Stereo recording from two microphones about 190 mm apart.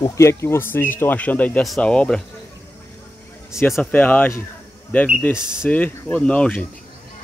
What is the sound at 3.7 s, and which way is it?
Speech, 10° left (ahead or behind).